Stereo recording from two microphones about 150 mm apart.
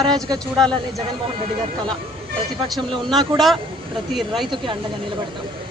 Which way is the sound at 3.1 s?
Centre (ahead or behind).